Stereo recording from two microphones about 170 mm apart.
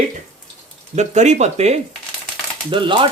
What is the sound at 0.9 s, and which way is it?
Speech, 45° right (ahead or behind).